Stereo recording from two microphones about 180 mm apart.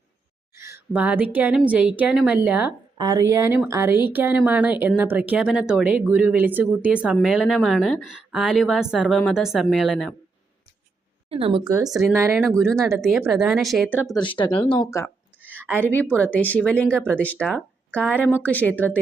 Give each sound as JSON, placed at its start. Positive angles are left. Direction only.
{"t": 0.5, "sound": "a woman's voice", "side_deg": -15}
{"t": 11.3, "sound": "a woman's voice", "side_deg": -30}
{"t": 11.9, "sound": "speech", "side_deg": 0}
{"t": 14.3, "sound": "speech", "side_deg": 25}
{"t": 15.4, "sound": "a sound", "side_deg": -10}
{"t": 15.9, "sound": "speech", "side_deg": 10}